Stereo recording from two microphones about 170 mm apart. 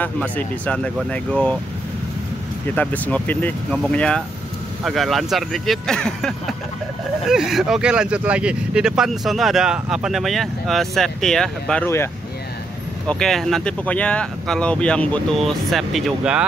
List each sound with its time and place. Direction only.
0.0 s speech: 10° left (ahead or behind)
2.7 s speech: 10° left (ahead or behind)
11.8 s speech: 15° left (ahead or behind)
13.0 s speech: 5° left (ahead or behind)